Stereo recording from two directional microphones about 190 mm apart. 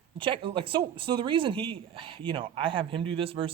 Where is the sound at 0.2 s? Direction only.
25° right (ahead or behind).